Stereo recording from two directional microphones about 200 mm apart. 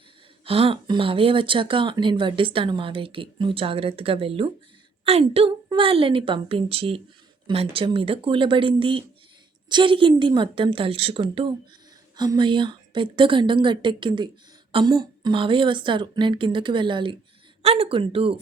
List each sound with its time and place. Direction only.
0.4 s speech: 30° right (ahead or behind)